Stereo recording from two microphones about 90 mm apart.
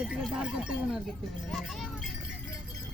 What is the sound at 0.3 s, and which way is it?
Speech, 10° right (ahead or behind).